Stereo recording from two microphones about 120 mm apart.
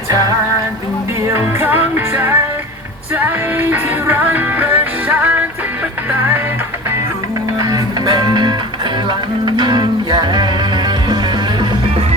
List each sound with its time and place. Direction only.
1.3 s music: 20° right (ahead or behind)
7.6 s music: 30° right (ahead or behind)